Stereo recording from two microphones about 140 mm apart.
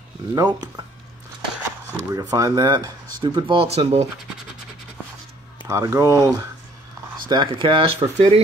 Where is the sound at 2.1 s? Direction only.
25° right (ahead or behind); by 4.1 s 50° right (ahead or behind).